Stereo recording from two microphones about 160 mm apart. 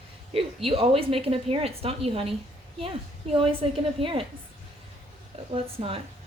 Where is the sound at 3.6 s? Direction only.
35° right (ahead or behind).